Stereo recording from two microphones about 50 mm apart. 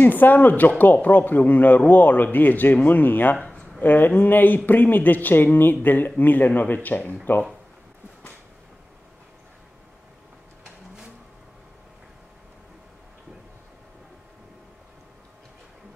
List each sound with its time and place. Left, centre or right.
0.0 s a man's voice: left
3.3 s a sound: centre
3.8 s a man's voice: left